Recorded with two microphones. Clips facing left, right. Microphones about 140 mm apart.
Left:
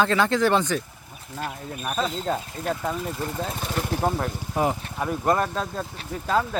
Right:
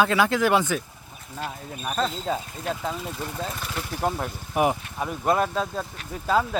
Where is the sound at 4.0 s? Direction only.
Centre (ahead or behind).